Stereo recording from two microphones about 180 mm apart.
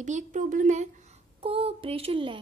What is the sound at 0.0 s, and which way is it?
Speech, 45° right (ahead or behind).